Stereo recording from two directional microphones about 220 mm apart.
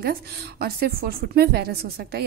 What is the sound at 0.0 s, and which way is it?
A woman's voice, 45° right (ahead or behind).